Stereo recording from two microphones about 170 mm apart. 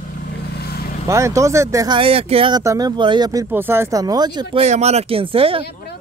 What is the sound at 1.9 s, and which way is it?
Speech, 35° right (ahead or behind).